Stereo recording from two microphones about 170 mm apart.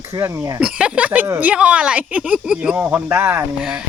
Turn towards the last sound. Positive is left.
turn(degrees=-5)  # may be behind; listen again after turning